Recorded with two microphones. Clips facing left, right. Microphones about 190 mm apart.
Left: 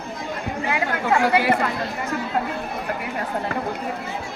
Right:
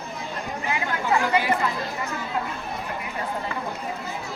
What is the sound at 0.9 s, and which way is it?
Speech, 50° left (ahead or behind).